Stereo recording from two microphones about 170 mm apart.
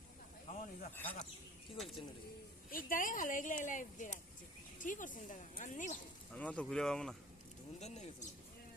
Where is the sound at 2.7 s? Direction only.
55° left (ahead or behind).